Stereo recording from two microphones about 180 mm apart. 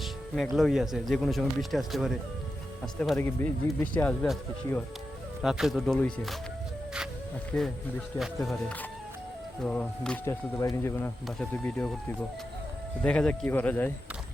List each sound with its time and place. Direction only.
0.5 s a man's voice: centre (ahead or behind)
7.5 s a man's voice: 5° left (ahead or behind)
11.3 s a man's voice: 5° left (ahead or behind)
13.0 s speech: 5° left (ahead or behind)